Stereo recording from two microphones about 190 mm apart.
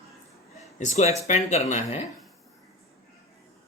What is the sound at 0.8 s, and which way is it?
Speech, 40° left (ahead or behind).